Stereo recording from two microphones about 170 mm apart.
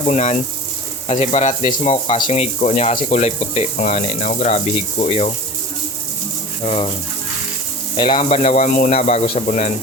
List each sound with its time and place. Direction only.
0.1 s speech: 45° left (ahead or behind)
7.9 s speech: 30° left (ahead or behind); by 8.9 s 50° left (ahead or behind)
8.9 s speech: 40° left (ahead or behind)